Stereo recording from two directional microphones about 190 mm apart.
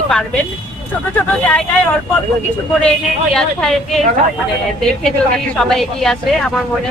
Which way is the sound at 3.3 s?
Centre (ahead or behind).